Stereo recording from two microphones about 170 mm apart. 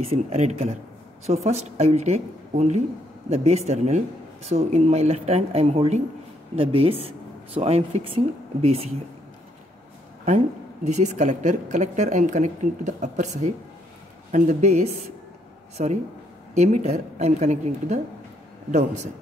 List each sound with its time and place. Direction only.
0.0 s speech: 40° right (ahead or behind)
10.2 s a woman's voice: 40° right (ahead or behind)